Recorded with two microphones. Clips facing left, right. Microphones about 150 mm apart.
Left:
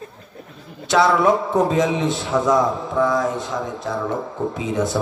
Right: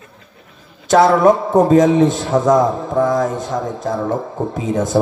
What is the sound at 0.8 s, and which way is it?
A man's voice, 45° right (ahead or behind).